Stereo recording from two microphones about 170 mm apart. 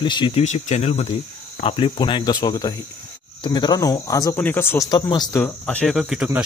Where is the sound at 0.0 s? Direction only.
25° left (ahead or behind).